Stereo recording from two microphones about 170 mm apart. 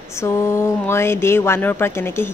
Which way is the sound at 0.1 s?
15° left (ahead or behind).